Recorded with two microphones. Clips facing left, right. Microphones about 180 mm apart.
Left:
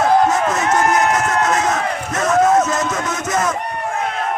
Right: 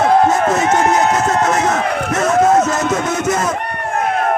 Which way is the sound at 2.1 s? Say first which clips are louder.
Right 1 dB; 30° right (ahead or behind).